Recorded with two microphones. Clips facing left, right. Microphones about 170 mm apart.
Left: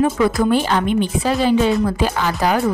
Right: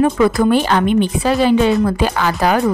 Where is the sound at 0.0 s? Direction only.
65° right (ahead or behind).